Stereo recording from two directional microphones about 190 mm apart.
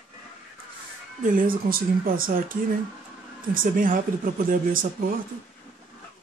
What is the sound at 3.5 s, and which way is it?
A woman's voice, 45° right (ahead or behind).